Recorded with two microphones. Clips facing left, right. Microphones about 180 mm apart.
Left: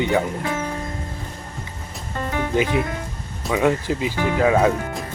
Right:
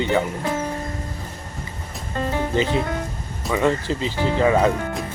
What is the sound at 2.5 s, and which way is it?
Speech, 15° left (ahead or behind).